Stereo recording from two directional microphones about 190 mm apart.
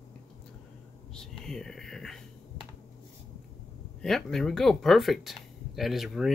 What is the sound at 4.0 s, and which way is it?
Speech, centre (ahead or behind).